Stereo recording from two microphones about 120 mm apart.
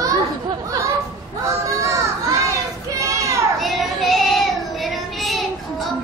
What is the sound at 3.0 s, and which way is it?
Children playing, 25° right (ahead or behind).